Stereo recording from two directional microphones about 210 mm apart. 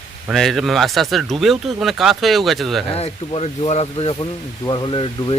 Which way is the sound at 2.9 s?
30° left (ahead or behind).